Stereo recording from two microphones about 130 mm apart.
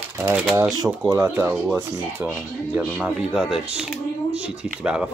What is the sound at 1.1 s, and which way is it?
Speech, 20° right (ahead or behind).